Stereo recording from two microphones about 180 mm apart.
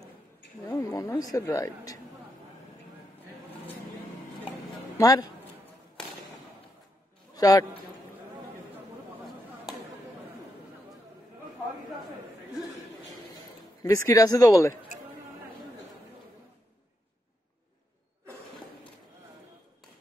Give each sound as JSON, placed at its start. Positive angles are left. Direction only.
{"t": 0.7, "sound": "speech", "side_deg": 15}
{"t": 4.9, "sound": "a man's voice", "side_deg": 20}
{"t": 7.3, "sound": "a man's voice", "side_deg": 20}
{"t": 13.8, "sound": "speech", "side_deg": 20}